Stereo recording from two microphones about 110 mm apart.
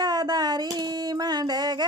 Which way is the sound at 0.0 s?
40° right (ahead or behind).